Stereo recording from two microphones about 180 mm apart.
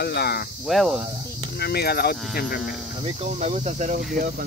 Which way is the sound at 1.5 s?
60° left (ahead or behind).